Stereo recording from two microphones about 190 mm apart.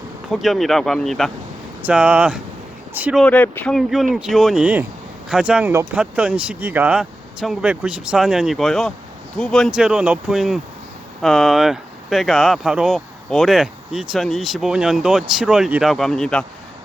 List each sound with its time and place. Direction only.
0.3 s speech: centre (ahead or behind)
3.2 s speech: 10° left (ahead or behind)